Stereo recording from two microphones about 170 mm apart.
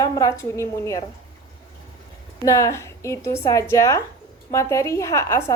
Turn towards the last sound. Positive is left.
turn(degrees=15)  # may be behind; listen again after turning